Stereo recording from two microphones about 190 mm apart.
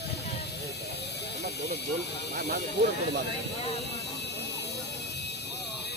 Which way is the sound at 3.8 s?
65° left (ahead or behind).